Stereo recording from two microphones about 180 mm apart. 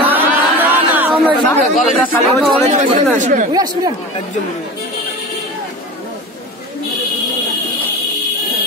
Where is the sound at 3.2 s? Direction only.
45° right (ahead or behind).